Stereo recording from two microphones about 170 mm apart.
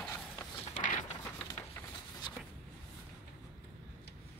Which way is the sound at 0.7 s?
45° left (ahead or behind).